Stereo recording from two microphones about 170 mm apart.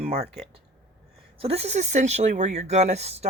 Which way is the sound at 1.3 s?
35° right (ahead or behind).